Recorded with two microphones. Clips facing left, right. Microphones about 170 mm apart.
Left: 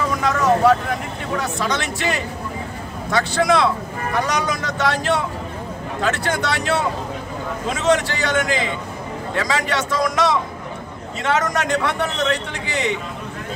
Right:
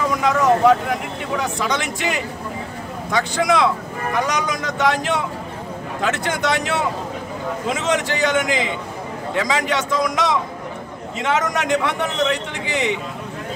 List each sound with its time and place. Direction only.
0.2 s vehicle: 15° right (ahead or behind)
1.4 s a man's voice: 15° right (ahead or behind)